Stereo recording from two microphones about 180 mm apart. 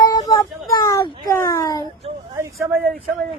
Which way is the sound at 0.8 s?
20° left (ahead or behind).